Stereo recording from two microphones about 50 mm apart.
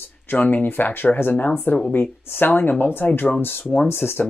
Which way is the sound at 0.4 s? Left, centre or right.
Left.